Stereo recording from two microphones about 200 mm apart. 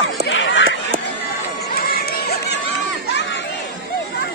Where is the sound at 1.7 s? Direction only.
50° left (ahead or behind).